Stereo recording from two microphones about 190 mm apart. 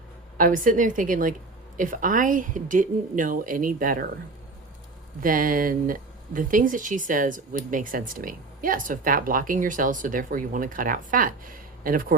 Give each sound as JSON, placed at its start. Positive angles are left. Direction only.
{"t": 0.3, "sound": "speech", "side_deg": -45}
{"t": 5.2, "sound": "speech", "side_deg": -45}